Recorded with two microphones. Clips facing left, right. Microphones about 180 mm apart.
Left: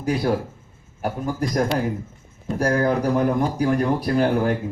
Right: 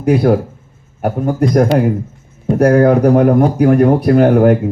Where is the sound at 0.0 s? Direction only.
55° right (ahead or behind).